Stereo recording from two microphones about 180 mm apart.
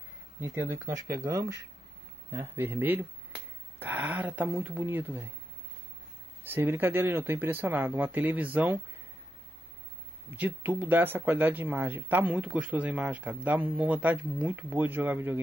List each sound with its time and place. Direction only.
0.4 s speech: 15° right (ahead or behind)
6.4 s speech: 10° right (ahead or behind)
10.3 s speech: 10° right (ahead or behind)